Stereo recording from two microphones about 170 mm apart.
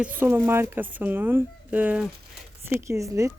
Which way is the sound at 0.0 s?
10° right (ahead or behind).